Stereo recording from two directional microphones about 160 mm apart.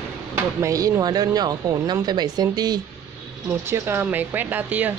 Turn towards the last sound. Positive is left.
turn(degrees=-10)  # may be behind; listen again after turning